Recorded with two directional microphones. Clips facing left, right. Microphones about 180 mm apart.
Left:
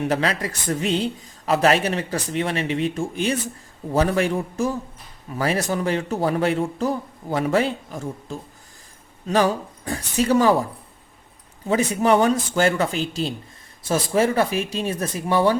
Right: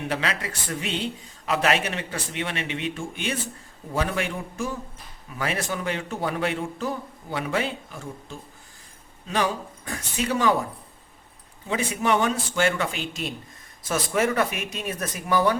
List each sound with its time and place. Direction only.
0.1 s speech: 40° left (ahead or behind)
11.7 s speech: 40° left (ahead or behind)